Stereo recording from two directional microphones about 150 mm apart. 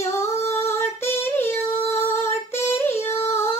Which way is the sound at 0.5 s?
15° left (ahead or behind).